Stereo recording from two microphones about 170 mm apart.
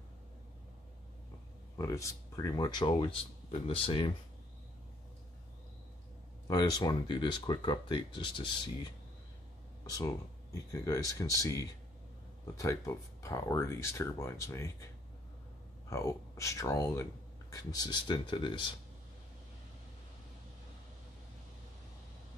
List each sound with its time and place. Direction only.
1.8 s speech: 20° left (ahead or behind)
6.4 s speech: 25° left (ahead or behind)
15.9 s speech: 15° left (ahead or behind)